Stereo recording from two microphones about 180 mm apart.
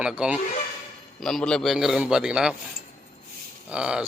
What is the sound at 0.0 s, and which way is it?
A man's voice, 5° right (ahead or behind).